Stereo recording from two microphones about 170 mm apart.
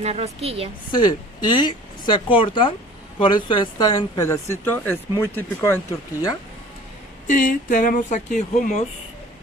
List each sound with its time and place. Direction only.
0.0 s a woman's voice: 40° right (ahead or behind)
0.9 s speech: 25° left (ahead or behind)
7.2 s speech: 50° left (ahead or behind)